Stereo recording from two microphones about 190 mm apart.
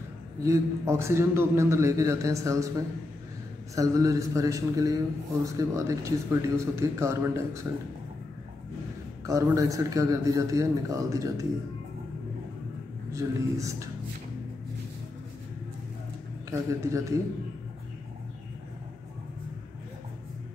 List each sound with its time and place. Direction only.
0.4 s a man's voice: 15° right (ahead or behind)
9.2 s a man's voice: 15° right (ahead or behind)
13.1 s a man's voice: 15° right (ahead or behind)
16.4 s a man's voice: 15° right (ahead or behind)